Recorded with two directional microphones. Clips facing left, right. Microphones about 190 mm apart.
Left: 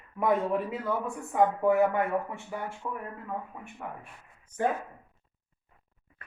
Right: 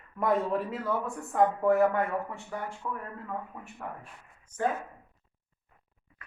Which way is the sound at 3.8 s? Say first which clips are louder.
Even; 5° left (ahead or behind).